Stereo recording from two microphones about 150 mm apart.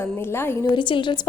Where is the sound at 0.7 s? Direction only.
35° left (ahead or behind).